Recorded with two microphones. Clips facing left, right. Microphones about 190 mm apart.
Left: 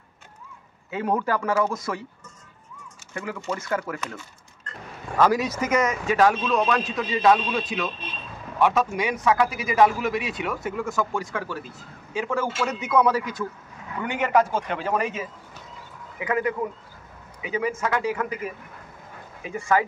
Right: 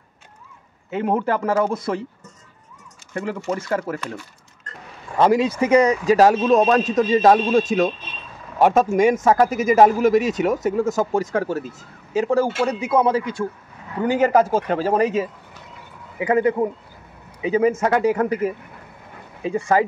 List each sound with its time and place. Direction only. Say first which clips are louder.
0.9 s speech: right 4 dB; 25° right (ahead or behind)
3.2 s a man's voice: right 5 dB; 30° right (ahead or behind)
5.1 s a man's voice: right 4 dB; 30° right (ahead or behind)
19.4 s a man's voice: right 4 dB; 30° right (ahead or behind)